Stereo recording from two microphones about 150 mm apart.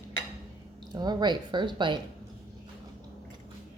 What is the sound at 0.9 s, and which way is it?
A woman's voice, 30° right (ahead or behind).